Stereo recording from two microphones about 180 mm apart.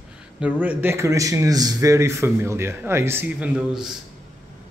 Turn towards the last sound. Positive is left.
turn(degrees=-5)  # may be behind; listen again after turning